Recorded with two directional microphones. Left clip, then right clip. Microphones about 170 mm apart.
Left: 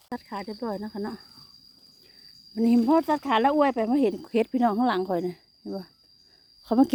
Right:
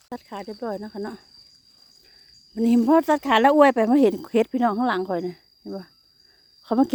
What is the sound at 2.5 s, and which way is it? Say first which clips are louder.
Speech: right 3 dB; 15° right (ahead or behind).